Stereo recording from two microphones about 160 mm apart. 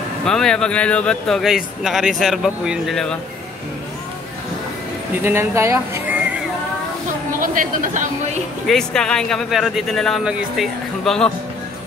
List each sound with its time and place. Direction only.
0.2 s a man's voice: 5° left (ahead or behind)
5.2 s speech: 15° right (ahead or behind)
7.3 s a woman's voice: 55° right (ahead or behind)
8.6 s a man's voice: 5° left (ahead or behind)